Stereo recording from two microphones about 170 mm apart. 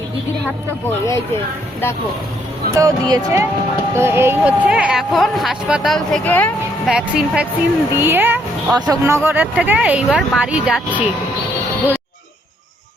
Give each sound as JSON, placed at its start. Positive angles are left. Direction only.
{"t": 0.9, "sound": "speech", "side_deg": 15}
{"t": 2.7, "sound": "speech", "side_deg": -20}
{"t": 6.8, "sound": "speech", "side_deg": -5}